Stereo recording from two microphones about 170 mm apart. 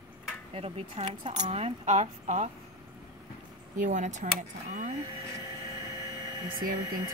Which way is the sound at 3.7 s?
45° right (ahead or behind).